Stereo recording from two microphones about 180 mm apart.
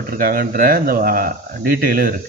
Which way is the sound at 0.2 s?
55° right (ahead or behind).